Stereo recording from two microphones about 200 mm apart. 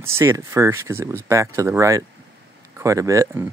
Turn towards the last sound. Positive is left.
turn(degrees=-15)  # may be behind; listen again after turning